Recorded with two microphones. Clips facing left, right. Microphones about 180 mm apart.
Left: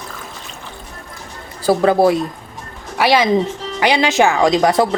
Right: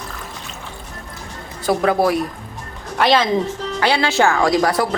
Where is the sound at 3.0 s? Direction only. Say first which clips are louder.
Left 2 dB; 10° left (ahead or behind).